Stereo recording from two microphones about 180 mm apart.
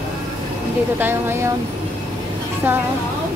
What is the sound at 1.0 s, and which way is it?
Speech, 15° right (ahead or behind).